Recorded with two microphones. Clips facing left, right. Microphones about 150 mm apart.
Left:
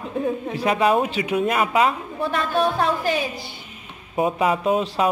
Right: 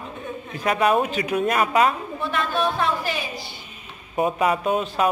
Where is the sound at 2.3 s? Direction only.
40° left (ahead or behind).